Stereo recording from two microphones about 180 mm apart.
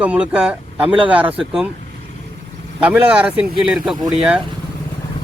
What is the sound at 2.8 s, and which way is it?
Speech, 10° right (ahead or behind).